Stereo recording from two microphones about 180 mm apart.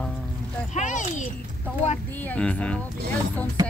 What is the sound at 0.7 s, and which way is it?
Speech, 40° left (ahead or behind).